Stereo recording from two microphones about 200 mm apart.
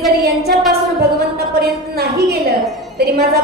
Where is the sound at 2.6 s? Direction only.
Centre (ahead or behind).